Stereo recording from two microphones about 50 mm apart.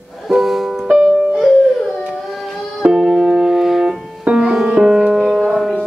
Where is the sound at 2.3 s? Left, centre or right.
Centre.